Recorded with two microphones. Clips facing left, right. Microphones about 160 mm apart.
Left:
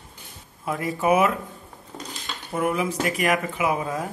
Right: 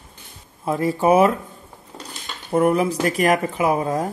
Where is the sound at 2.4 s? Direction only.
40° right (ahead or behind).